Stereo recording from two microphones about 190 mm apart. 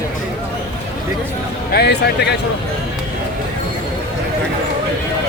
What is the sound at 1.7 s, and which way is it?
Speech, 60° left (ahead or behind).